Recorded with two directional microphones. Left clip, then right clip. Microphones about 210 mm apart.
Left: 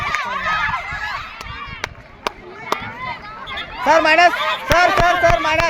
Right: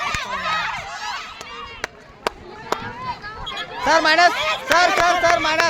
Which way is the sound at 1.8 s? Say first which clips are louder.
Even; 40° left (ahead or behind).